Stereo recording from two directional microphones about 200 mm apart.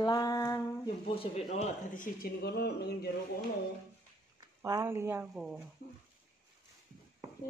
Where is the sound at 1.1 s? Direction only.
35° left (ahead or behind); by 3.1 s 55° left (ahead or behind).